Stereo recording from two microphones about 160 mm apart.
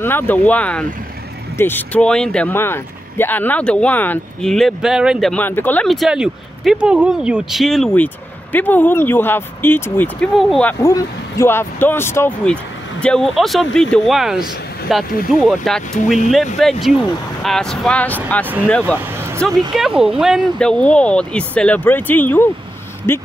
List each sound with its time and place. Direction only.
0.0 s speech: 10° left (ahead or behind); by 5.3 s 5° right (ahead or behind)
5.3 s speech: 10° left (ahead or behind)
5.9 s speech: centre (ahead or behind)
10.8 s speech: 20° left (ahead or behind)
13.0 s speech: 5° left (ahead or behind)
19.7 s speech: 5° right (ahead or behind)